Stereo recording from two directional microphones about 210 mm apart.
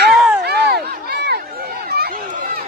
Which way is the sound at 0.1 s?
Centre (ahead or behind).